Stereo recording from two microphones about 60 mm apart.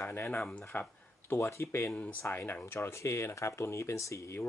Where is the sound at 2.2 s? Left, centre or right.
Left.